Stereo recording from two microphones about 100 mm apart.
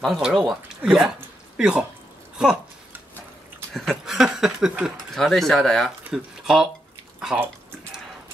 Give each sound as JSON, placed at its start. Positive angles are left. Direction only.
{"t": 0.0, "sound": "speech", "side_deg": 0}
{"t": 3.7, "sound": "speech", "side_deg": 5}
{"t": 6.0, "sound": "speech", "side_deg": -5}
{"t": 7.3, "sound": "speech", "side_deg": -20}